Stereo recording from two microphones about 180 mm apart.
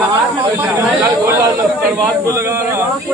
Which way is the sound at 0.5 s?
10° right (ahead or behind).